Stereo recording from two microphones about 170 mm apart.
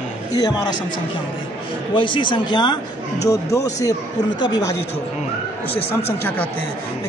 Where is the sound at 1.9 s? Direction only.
30° left (ahead or behind).